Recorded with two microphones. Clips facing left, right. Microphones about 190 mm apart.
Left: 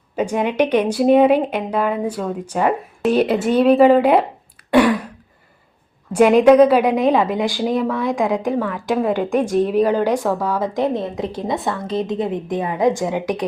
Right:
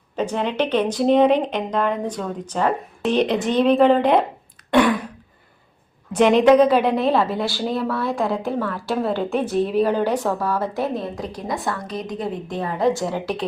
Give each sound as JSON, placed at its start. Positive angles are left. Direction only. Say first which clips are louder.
{"t": 0.2, "sound": "speech", "louder": "left 4 dB", "side_deg": 10}
{"t": 4.7, "sound": "a sound", "louder": "left 3 dB", "side_deg": 5}
{"t": 6.1, "sound": "speech", "louder": "left 3 dB", "side_deg": 10}